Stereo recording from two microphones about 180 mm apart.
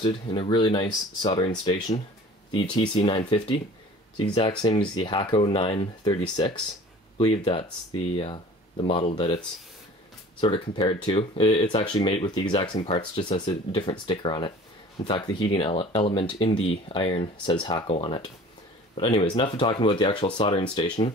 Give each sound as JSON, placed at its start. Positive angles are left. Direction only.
{"t": 0.0, "sound": "speech", "side_deg": 30}
{"t": 10.4, "sound": "speech", "side_deg": 30}